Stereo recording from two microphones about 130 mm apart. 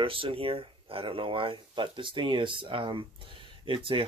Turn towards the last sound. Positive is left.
turn(degrees=-40)  # may be behind; listen again after turning